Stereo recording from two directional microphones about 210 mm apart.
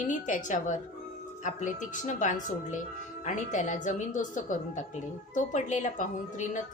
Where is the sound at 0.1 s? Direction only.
35° left (ahead or behind).